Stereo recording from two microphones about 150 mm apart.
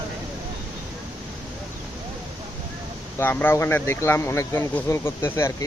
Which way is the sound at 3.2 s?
15° left (ahead or behind).